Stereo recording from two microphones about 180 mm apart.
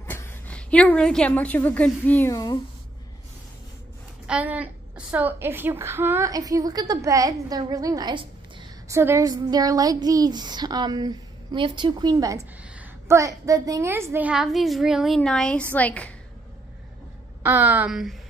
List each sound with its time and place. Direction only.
0.0 s a woman's voice: 10° left (ahead or behind)
4.3 s a woman's voice: 10° right (ahead or behind)
12.6 s a sound: 5° right (ahead or behind)
13.2 s a woman's voice: 20° right (ahead or behind); by 16.1 s 10° left (ahead or behind)
17.4 s a woman's voice: 10° right (ahead or behind)